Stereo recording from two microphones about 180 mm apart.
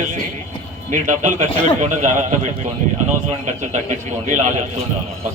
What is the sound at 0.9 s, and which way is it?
A man's voice, 45° right (ahead or behind).